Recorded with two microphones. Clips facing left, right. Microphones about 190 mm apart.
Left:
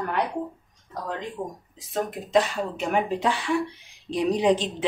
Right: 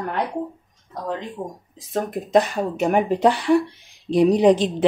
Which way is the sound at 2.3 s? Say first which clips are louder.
Right 4 dB; 45° right (ahead or behind).